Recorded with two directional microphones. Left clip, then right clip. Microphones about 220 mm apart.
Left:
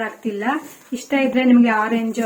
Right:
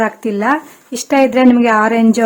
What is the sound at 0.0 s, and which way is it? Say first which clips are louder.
Speech: right 8 dB; 50° right (ahead or behind).